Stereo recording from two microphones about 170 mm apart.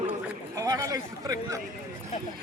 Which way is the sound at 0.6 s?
20° right (ahead or behind).